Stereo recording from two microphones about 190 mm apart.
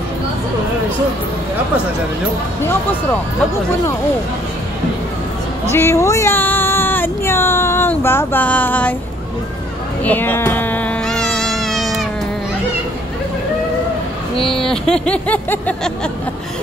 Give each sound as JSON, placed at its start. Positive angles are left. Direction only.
{"t": 2.6, "sound": "speech", "side_deg": 10}
{"t": 5.7, "sound": "speech", "side_deg": 15}
{"t": 10.0, "sound": "baby cry", "side_deg": 10}
{"t": 14.5, "sound": "music", "side_deg": 0}